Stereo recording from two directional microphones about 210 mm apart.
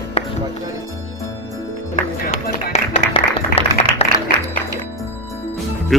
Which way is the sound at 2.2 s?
40° left (ahead or behind).